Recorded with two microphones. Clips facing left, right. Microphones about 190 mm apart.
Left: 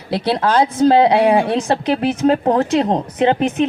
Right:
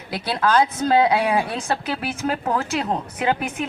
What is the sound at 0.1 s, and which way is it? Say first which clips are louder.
A woman's voice: left 4 dB; 25° left (ahead or behind).